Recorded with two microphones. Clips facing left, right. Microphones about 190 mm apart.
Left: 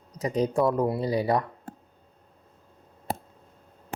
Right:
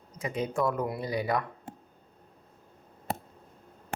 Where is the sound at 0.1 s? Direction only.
40° left (ahead or behind).